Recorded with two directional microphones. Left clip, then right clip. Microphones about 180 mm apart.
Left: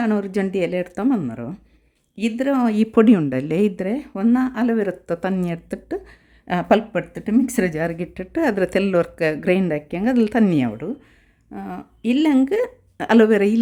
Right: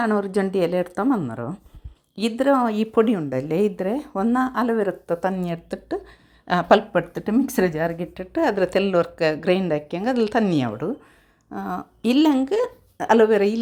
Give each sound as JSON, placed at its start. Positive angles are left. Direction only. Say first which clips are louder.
{"t": 0.0, "sound": "a woman's voice", "louder": "right 1 dB", "side_deg": 10}
{"t": 2.6, "sound": "speech", "louder": "left 4 dB", "side_deg": 25}
{"t": 3.4, "sound": "speech", "louder": "left 1 dB", "side_deg": 20}
{"t": 3.9, "sound": "speech", "louder": "left 1 dB", "side_deg": 5}
{"t": 10.7, "sound": "a woman's voice", "louder": "right 1 dB", "side_deg": 5}
{"t": 12.4, "sound": "speech", "louder": "left 2 dB", "side_deg": 25}